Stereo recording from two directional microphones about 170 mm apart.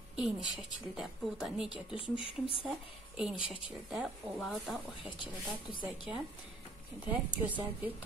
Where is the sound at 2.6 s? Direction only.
5° right (ahead or behind).